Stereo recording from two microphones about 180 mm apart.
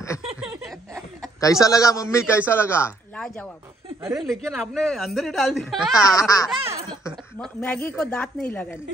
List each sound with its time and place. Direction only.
1.4 s a man's voice: 20° left (ahead or behind)
4.1 s speech: centre (ahead or behind)
5.9 s speech: 20° left (ahead or behind)
7.3 s speech: 5° left (ahead or behind)